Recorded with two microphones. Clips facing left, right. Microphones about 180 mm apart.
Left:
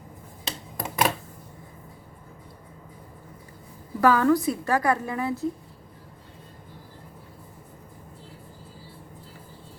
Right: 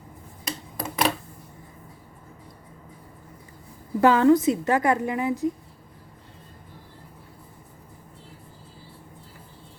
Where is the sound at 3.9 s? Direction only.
25° right (ahead or behind).